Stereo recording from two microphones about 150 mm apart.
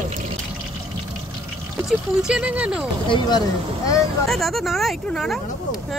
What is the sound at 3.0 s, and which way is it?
Speech, 30° left (ahead or behind).